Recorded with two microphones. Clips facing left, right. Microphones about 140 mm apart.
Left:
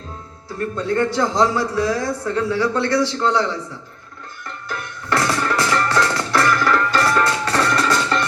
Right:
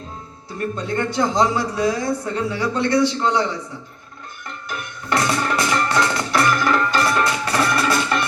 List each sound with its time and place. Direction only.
0.8 s speech: 15° right (ahead or behind)
4.4 s music: 15° right (ahead or behind)